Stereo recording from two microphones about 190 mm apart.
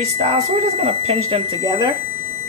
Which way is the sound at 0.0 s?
30° right (ahead or behind).